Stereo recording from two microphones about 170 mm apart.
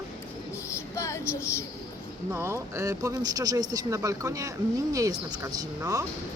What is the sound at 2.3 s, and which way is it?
A woman's voice, 15° right (ahead or behind).